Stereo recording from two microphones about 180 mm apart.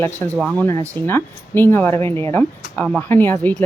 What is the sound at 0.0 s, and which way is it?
Speech, 10° left (ahead or behind).